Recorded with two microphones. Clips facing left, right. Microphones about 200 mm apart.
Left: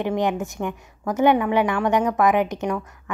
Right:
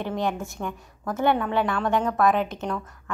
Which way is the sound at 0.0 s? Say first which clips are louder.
Left 5 dB; 15° left (ahead or behind).